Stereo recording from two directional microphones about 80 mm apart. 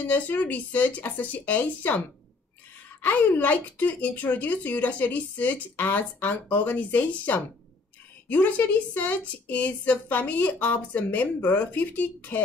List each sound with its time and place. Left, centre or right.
0.0 s speech: centre